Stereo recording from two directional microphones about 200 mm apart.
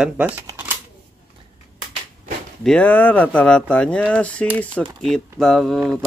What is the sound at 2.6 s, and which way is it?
Speech, 5° left (ahead or behind).